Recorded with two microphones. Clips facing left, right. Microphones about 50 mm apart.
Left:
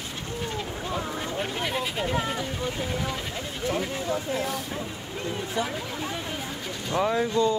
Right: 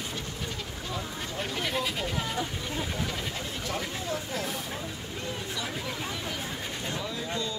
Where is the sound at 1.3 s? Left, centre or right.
Centre.